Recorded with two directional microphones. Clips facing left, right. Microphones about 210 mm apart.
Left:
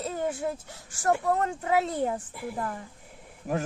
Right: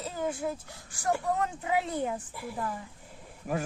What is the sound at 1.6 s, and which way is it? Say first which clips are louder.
Speech: left 4 dB; 40° left (ahead or behind).